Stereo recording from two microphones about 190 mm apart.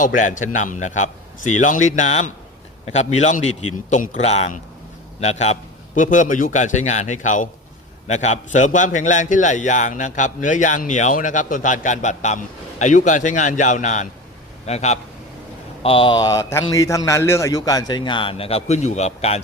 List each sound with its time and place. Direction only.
0.5 s a man's voice: 40° left (ahead or behind)